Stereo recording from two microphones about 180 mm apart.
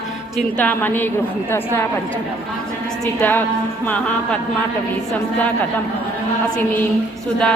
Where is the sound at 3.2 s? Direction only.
10° left (ahead or behind).